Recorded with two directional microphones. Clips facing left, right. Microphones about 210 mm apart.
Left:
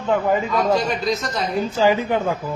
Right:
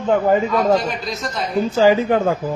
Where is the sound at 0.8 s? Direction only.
Centre (ahead or behind).